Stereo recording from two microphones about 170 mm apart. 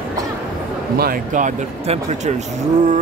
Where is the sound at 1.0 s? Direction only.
55° right (ahead or behind).